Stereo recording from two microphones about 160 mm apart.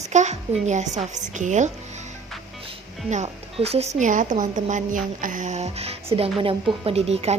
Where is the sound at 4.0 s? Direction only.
50° right (ahead or behind).